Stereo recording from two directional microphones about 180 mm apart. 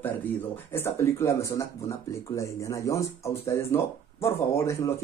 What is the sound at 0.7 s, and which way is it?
Speech, 15° left (ahead or behind).